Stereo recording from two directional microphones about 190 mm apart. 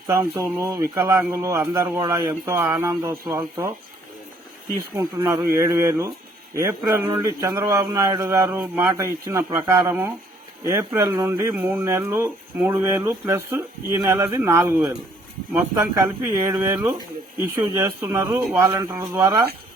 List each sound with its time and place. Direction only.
0.1 s speech: 15° right (ahead or behind)
4.9 s speech: 15° right (ahead or behind)